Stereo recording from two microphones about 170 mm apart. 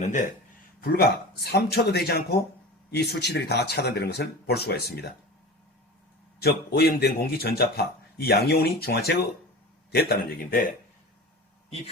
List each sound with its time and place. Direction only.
0.0 s speech: 45° left (ahead or behind)
0.8 s speech: 65° left (ahead or behind)
6.4 s speech: 65° left (ahead or behind)